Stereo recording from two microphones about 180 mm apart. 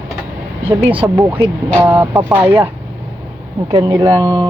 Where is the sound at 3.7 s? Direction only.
20° right (ahead or behind).